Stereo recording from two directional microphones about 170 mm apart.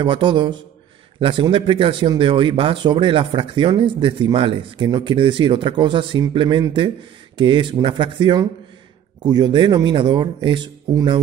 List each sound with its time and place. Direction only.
0.0 s speech: 30° right (ahead or behind)